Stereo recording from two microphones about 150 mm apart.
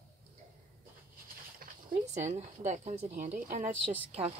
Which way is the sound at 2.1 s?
50° right (ahead or behind).